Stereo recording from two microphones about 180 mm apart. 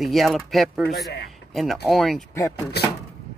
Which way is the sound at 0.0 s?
Centre (ahead or behind).